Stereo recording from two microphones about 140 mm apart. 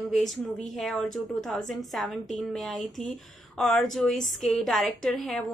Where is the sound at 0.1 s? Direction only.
5° left (ahead or behind).